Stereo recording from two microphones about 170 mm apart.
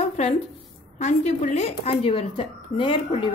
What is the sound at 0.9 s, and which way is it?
A woman's voice, 40° left (ahead or behind).